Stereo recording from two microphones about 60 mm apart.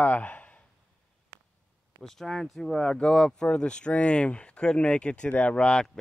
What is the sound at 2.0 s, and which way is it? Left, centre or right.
Speech, centre.